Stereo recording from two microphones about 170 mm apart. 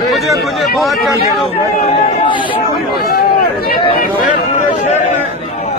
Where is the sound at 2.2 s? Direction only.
30° left (ahead or behind).